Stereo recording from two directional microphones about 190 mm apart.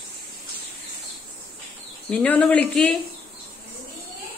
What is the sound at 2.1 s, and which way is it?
Speech, 5° left (ahead or behind).